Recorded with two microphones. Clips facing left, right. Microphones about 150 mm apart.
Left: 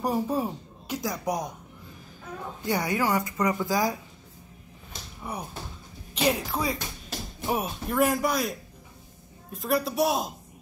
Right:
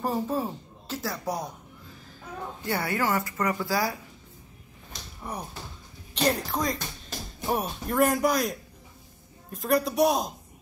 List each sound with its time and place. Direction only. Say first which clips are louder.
0.0 s speech: left 1 dB; 15° left (ahead or behind)
2.6 s speech: left 2 dB; 15° left (ahead or behind)
5.2 s speech: left 1 dB; 5° left (ahead or behind)